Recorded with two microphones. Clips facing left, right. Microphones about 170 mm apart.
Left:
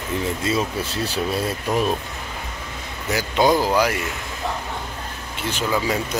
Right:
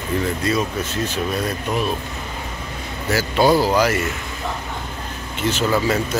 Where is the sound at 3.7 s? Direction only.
10° left (ahead or behind).